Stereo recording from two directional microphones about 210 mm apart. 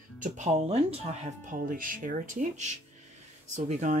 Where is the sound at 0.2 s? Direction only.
35° right (ahead or behind).